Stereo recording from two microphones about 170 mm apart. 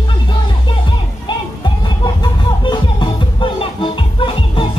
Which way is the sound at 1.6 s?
25° left (ahead or behind).